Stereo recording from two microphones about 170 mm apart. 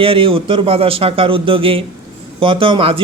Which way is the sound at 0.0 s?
30° right (ahead or behind).